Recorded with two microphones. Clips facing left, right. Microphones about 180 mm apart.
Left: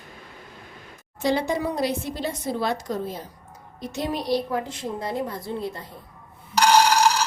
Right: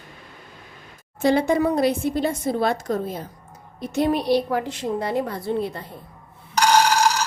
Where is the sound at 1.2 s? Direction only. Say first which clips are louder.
Right 5 dB; 55° right (ahead or behind).